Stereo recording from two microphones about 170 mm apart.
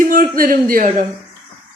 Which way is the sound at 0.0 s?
55° right (ahead or behind).